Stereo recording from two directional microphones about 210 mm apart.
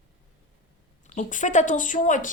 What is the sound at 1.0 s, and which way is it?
Speech, 35° left (ahead or behind).